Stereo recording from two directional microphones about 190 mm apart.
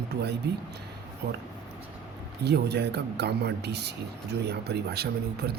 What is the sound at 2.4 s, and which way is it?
Speech, 60° right (ahead or behind).